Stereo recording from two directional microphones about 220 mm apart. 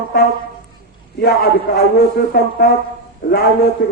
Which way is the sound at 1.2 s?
45° left (ahead or behind).